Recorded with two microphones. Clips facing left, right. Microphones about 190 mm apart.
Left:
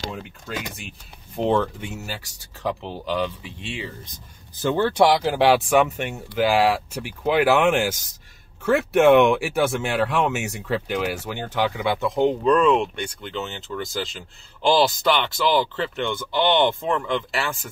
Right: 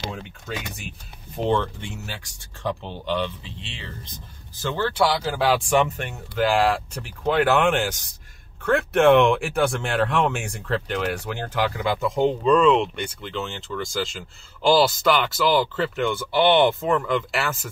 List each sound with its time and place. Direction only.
0.1 s speech: centre (ahead or behind)
4.6 s speech: 20° left (ahead or behind); by 17.6 s centre (ahead or behind)